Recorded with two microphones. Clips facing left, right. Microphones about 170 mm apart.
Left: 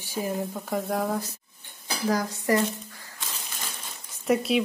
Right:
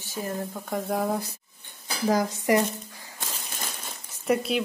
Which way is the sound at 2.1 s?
20° right (ahead or behind).